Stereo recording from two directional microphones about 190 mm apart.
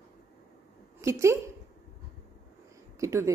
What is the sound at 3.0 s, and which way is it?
Speech, 15° right (ahead or behind).